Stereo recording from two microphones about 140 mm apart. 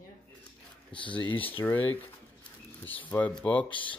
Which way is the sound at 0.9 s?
35° left (ahead or behind).